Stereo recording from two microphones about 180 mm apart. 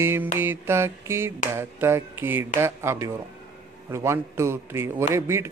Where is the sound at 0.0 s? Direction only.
15° right (ahead or behind).